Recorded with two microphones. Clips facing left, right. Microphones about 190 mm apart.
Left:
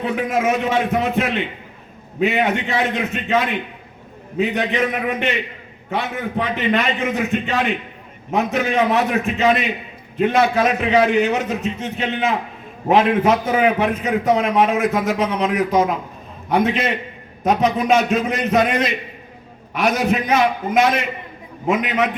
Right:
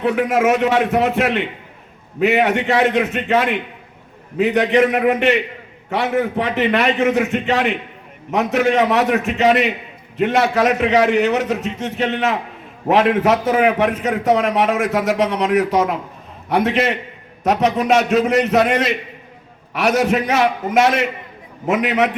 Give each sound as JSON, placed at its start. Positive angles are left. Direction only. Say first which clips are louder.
{"t": 0.0, "sound": "a man's voice", "louder": "right 4 dB", "side_deg": -75}